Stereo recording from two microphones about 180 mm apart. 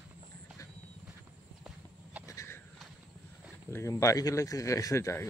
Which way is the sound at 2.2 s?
15° left (ahead or behind).